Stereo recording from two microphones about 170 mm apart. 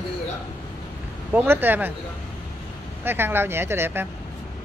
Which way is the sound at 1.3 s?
10° right (ahead or behind).